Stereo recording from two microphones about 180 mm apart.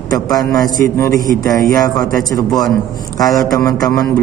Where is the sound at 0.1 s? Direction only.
20° left (ahead or behind).